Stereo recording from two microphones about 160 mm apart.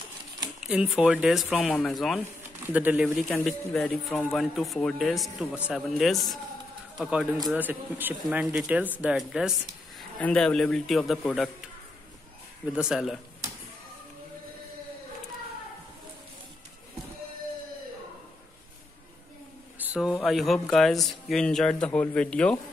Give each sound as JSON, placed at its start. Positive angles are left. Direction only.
{"t": 0.7, "sound": "speech", "side_deg": -5}
{"t": 3.3, "sound": "speech", "side_deg": 5}
{"t": 12.6, "sound": "speech", "side_deg": -5}
{"t": 19.8, "sound": "speech", "side_deg": -5}